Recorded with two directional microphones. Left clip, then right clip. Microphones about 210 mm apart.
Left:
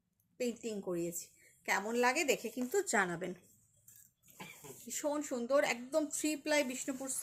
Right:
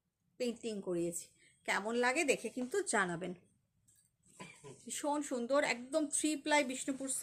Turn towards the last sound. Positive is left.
turn(degrees=-20)  # may be behind; listen again after turning